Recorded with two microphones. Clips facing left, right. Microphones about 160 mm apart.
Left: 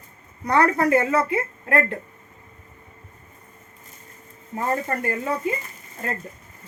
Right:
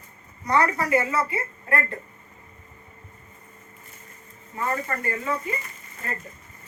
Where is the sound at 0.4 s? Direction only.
55° left (ahead or behind).